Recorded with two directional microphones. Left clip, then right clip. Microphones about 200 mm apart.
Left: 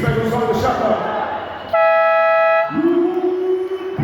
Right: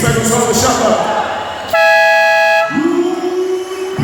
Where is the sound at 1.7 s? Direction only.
65° right (ahead or behind).